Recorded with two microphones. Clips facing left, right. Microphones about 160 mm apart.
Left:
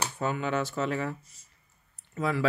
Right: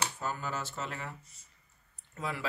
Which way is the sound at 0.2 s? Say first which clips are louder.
Left 8 dB; 70° left (ahead or behind).